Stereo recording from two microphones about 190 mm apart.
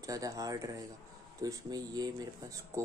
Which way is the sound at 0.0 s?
20° right (ahead or behind).